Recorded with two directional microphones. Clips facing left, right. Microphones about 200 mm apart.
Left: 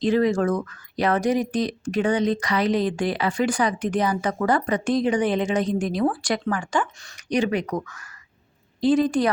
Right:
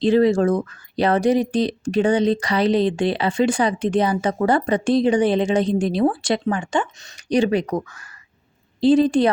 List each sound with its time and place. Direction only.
0.0 s speech: 30° right (ahead or behind)